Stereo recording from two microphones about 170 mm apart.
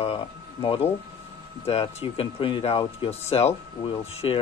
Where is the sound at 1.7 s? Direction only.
35° left (ahead or behind).